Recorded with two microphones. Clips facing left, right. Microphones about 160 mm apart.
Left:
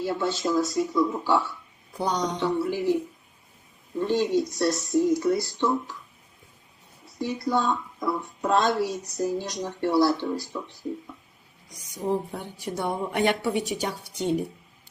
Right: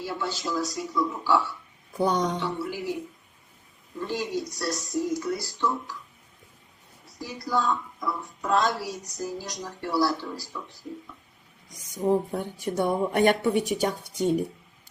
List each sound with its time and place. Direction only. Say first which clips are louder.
0.0 s speech: left 5 dB; 25° left (ahead or behind)
2.0 s speech: right 3 dB; 50° right (ahead or behind)
2.4 s speech: left 6 dB; 25° left (ahead or behind)
4.0 s speech: left 6 dB; 25° left (ahead or behind)
7.2 s speech: left 3 dB; 25° left (ahead or behind)
11.9 s speech: right 3 dB; 45° right (ahead or behind)